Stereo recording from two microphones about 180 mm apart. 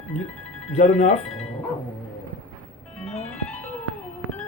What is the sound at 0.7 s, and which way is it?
Speech, 40° left (ahead or behind).